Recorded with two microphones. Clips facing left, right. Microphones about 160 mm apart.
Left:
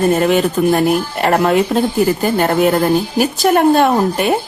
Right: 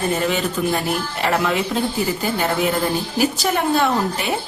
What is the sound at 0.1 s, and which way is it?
A woman's voice, 55° left (ahead or behind).